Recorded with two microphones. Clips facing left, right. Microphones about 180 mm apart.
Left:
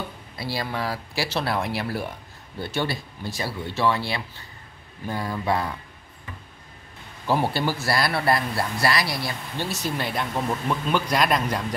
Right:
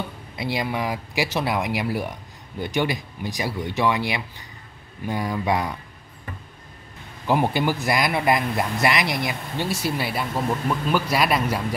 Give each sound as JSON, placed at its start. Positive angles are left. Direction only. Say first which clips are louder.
{"t": 0.4, "sound": "speech", "louder": "right 3 dB", "side_deg": -15}
{"t": 7.2, "sound": "speech", "louder": "right 2 dB", "side_deg": -15}